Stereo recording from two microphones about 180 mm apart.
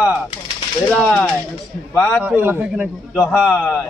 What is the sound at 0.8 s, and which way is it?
Speech, 5° left (ahead or behind).